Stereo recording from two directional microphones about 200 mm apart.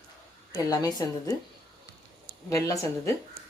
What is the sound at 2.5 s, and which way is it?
Speech, 15° left (ahead or behind).